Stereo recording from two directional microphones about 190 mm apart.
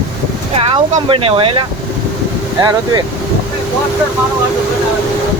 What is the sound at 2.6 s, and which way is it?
Speech, 20° right (ahead or behind).